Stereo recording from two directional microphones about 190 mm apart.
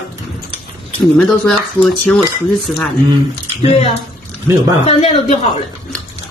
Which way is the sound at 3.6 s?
30° left (ahead or behind).